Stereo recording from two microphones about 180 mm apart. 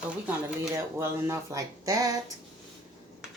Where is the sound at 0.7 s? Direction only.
15° right (ahead or behind).